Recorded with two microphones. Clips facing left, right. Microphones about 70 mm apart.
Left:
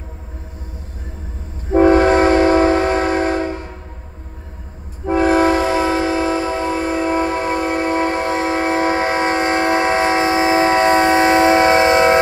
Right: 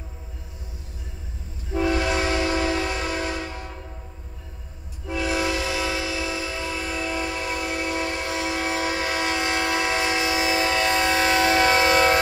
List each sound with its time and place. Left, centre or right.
1.7 s train: left
5.0 s train: left